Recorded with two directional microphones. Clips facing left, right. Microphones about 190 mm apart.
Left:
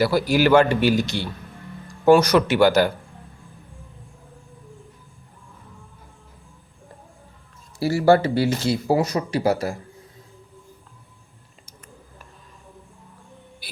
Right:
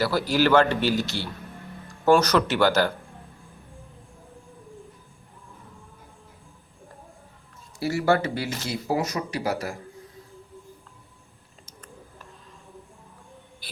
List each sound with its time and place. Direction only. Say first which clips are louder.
0.0 s a man's voice: left 4 dB; 10° left (ahead or behind)
7.8 s speech: left 6 dB; 30° left (ahead or behind)
13.6 s music: left 5 dB; 10° left (ahead or behind)